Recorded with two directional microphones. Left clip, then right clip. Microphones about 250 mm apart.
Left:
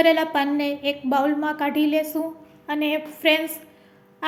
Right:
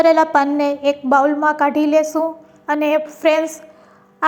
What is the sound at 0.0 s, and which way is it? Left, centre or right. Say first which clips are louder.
A woman's voice: right 6 dB; centre.